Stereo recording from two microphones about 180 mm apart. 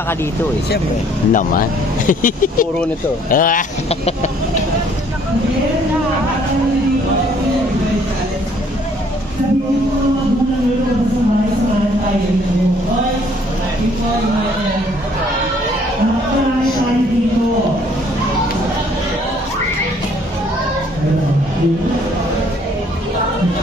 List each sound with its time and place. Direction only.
1.3 s speech: 50° left (ahead or behind)
3.9 s chicken: 35° left (ahead or behind)